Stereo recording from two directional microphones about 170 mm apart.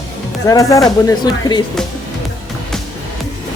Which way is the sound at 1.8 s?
5° left (ahead or behind).